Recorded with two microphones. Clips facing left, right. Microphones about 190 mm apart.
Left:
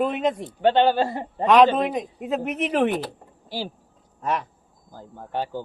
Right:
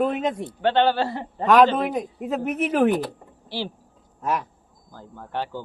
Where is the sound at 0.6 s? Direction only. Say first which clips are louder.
Left 2 dB; 15° left (ahead or behind).